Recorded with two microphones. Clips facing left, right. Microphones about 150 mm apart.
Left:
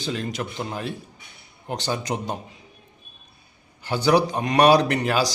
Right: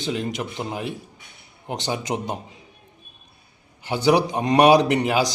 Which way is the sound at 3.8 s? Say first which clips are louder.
Right 1 dB; 20° right (ahead or behind).